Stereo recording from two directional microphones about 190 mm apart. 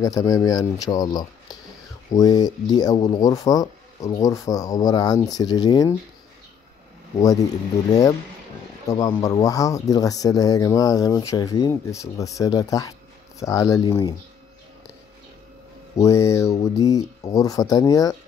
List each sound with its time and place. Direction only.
0.0 s speech: 20° left (ahead or behind)
7.2 s speech: 20° left (ahead or behind)
9.0 s speech: 20° left (ahead or behind)
16.0 s speech: 15° left (ahead or behind)